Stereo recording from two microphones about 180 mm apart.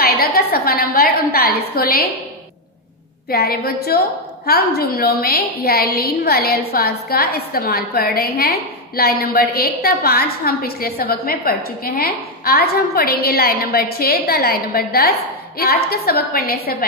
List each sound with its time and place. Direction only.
0.0 s a woman's voice: 55° left (ahead or behind)
3.3 s a woman's voice: 55° left (ahead or behind)